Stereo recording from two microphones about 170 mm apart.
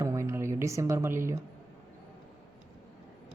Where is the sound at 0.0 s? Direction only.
15° right (ahead or behind).